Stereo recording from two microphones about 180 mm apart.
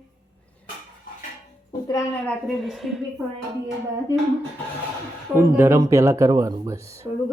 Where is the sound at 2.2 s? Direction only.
5° left (ahead or behind).